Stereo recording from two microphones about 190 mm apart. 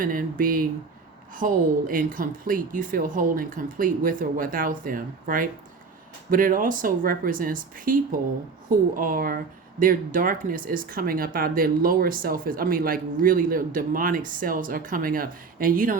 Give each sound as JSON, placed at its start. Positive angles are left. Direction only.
{"t": 0.0, "sound": "speech", "side_deg": -45}